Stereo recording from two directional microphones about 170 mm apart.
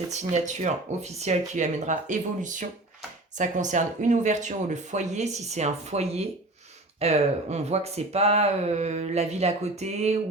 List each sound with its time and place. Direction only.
0.1 s speech: 45° right (ahead or behind)